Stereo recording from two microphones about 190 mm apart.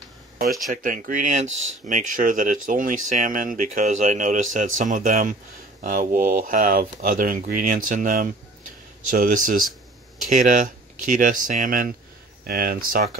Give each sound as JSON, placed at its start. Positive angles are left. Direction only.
{"t": 0.7, "sound": "speech", "side_deg": -45}